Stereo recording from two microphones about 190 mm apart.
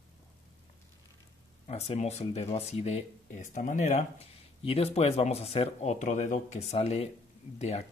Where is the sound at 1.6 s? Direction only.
30° left (ahead or behind).